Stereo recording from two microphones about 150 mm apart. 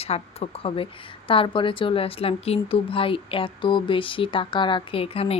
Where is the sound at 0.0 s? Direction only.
45° left (ahead or behind).